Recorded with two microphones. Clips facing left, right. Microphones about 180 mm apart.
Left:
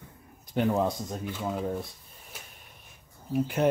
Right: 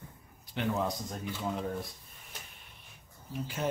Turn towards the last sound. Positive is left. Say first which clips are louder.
# left 9 dB
turn(degrees=55)  # may be behind; listen again after turning